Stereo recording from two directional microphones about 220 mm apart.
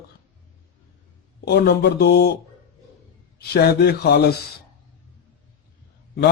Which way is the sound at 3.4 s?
45° left (ahead or behind).